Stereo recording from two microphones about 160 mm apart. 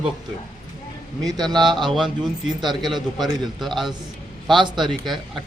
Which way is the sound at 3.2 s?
Centre (ahead or behind).